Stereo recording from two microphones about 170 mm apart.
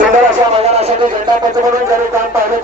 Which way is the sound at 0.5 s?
40° right (ahead or behind).